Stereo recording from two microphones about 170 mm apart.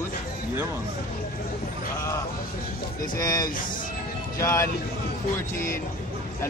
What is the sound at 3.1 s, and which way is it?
Speech, 20° left (ahead or behind).